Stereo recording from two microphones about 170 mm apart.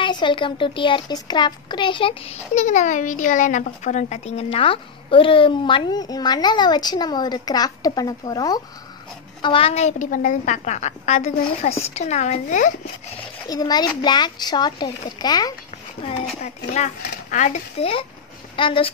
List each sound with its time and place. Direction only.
0.0 s a child's voice: 30° left (ahead or behind); by 12.7 s 45° left (ahead or behind)
13.5 s a child's voice: 25° left (ahead or behind)
16.0 s a woman's voice: 40° left (ahead or behind)